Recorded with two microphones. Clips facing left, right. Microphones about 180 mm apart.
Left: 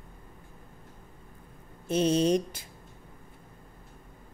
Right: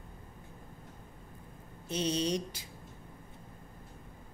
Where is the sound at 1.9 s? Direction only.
50° left (ahead or behind).